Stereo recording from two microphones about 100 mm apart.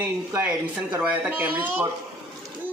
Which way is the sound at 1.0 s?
15° right (ahead or behind).